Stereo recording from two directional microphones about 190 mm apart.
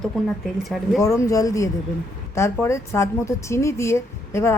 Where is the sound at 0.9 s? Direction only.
15° left (ahead or behind).